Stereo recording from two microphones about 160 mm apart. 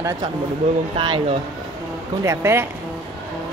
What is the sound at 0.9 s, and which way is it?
Speech, 30° right (ahead or behind).